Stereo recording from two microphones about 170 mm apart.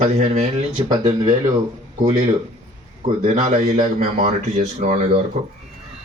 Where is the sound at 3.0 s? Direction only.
40° right (ahead or behind).